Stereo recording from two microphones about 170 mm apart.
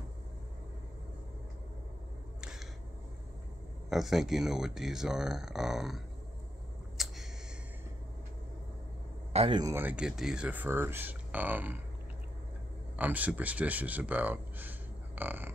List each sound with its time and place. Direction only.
3.9 s speech: centre (ahead or behind)
7.0 s a sound: centre (ahead or behind)
9.3 s speech: 35° right (ahead or behind)
9.6 s speech: 15° right (ahead or behind)
12.9 s speech: 10° right (ahead or behind)